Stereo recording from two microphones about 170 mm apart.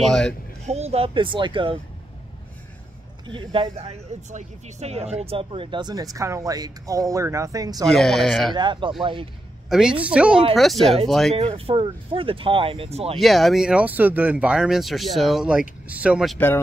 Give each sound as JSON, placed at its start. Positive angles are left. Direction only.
{"t": 0.0, "sound": "speech", "side_deg": 5}
{"t": 0.7, "sound": "speech", "side_deg": -40}
{"t": 3.3, "sound": "speech", "side_deg": -30}
{"t": 7.9, "sound": "speech", "side_deg": 0}
{"t": 8.5, "sound": "speech", "side_deg": -30}
{"t": 9.7, "sound": "speech", "side_deg": -5}
{"t": 11.3, "sound": "speech", "side_deg": -35}
{"t": 13.2, "sound": "speech", "side_deg": 0}
{"t": 16.3, "sound": "speech", "side_deg": 10}